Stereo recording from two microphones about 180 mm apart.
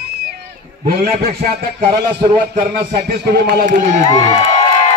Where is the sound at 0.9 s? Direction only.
60° right (ahead or behind).